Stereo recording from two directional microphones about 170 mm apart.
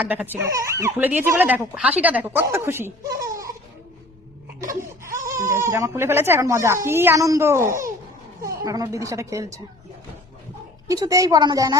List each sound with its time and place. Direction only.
0.0 s speech: 10° right (ahead or behind)
4.7 s a woman's voice: 15° right (ahead or behind)
10.8 s a woman's voice: 20° right (ahead or behind)